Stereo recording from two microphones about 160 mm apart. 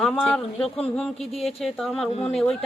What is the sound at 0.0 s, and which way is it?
Speech, 5° left (ahead or behind).